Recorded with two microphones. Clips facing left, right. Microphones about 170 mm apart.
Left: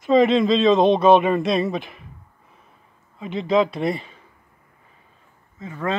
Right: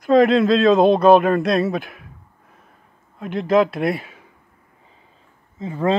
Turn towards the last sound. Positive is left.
turn(degrees=-30)  # may be behind; listen again after turning